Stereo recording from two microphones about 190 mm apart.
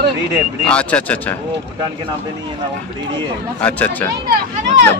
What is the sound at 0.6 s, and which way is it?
Speech, 5° left (ahead or behind).